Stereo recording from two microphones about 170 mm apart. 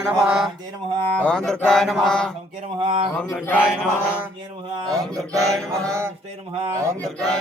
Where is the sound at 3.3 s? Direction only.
10° left (ahead or behind).